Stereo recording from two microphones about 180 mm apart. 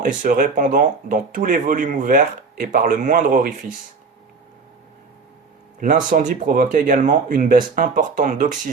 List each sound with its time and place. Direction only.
0.0 s speech: 45° right (ahead or behind)
5.8 s speech: 45° right (ahead or behind)